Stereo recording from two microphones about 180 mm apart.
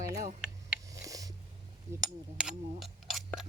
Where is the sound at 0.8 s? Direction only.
20° right (ahead or behind).